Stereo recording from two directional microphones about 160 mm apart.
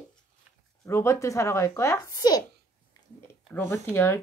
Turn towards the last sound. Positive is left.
turn(degrees=15)  # may be behind; listen again after turning